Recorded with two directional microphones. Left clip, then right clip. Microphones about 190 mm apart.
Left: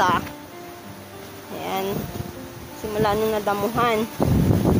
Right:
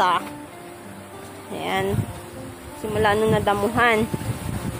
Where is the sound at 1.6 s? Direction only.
15° right (ahead or behind).